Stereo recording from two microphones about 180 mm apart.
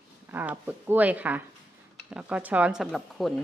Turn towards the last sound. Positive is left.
turn(degrees=0)  # may be behind; listen again after turning